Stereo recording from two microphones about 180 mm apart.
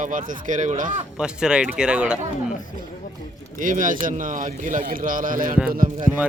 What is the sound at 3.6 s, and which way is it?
Speech, 45° right (ahead or behind).